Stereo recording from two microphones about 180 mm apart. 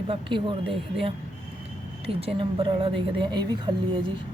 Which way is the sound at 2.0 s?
30° right (ahead or behind).